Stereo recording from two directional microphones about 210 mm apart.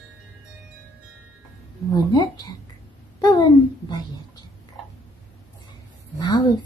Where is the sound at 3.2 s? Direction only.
20° left (ahead or behind).